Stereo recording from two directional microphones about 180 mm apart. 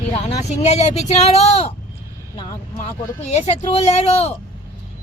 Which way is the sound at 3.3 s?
35° left (ahead or behind).